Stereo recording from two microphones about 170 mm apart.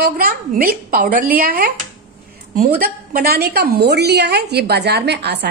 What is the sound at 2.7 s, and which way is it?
A woman's voice, 60° right (ahead or behind).